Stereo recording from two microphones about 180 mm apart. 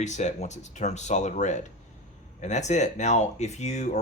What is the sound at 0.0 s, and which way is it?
Speech, 40° left (ahead or behind).